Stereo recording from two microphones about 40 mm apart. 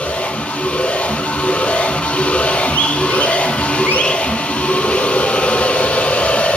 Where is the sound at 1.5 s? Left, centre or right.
Left.